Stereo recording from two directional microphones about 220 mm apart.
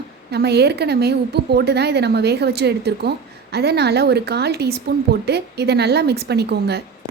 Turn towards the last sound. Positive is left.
turn(degrees=-50)  # may be behind; listen again after turning